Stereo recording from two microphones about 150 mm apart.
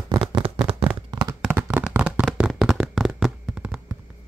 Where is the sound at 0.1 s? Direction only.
35° right (ahead or behind).